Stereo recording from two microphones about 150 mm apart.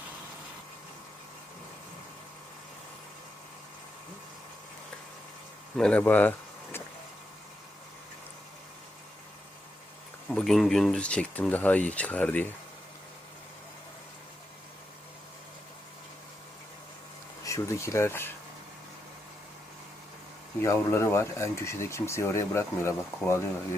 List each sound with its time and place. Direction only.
5.7 s speech: 5° left (ahead or behind)
10.2 s speech: centre (ahead or behind)
17.4 s speech: 20° left (ahead or behind)
20.6 s speech: 20° left (ahead or behind)